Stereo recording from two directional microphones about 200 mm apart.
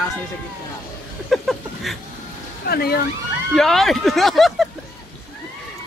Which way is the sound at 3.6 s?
Centre (ahead or behind).